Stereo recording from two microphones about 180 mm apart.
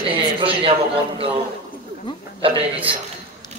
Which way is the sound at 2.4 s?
30° right (ahead or behind).